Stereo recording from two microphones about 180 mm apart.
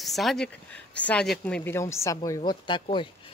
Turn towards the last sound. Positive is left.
turn(degrees=25)  # may be behind; listen again after turning